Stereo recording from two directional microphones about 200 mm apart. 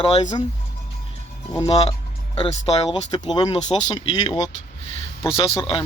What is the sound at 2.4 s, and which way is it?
Speech, 30° left (ahead or behind).